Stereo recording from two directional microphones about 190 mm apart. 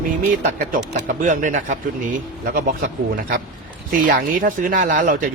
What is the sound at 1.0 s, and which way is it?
Speech, 40° right (ahead or behind).